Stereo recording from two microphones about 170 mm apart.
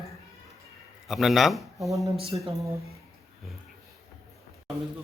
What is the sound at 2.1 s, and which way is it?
Speech, 35° right (ahead or behind).